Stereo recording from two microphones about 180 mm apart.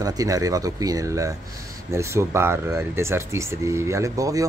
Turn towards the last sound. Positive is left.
turn(degrees=-20)  # may be behind; listen again after turning